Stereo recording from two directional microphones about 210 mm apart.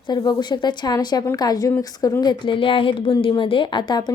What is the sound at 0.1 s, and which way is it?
A woman's voice, 20° left (ahead or behind).